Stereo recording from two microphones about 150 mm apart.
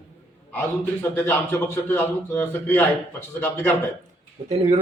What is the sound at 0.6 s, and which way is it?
A man's voice, 10° left (ahead or behind).